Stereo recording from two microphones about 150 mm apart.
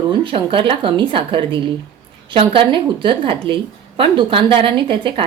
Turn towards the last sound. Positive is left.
turn(degrees=-35)  # may be behind; listen again after turning